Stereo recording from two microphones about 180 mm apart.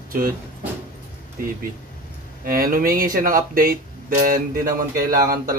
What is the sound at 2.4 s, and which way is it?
A man's voice, 55° right (ahead or behind).